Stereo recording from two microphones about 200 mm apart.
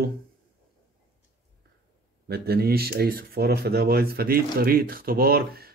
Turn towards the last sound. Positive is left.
turn(degrees=-50)  # may be behind; listen again after turning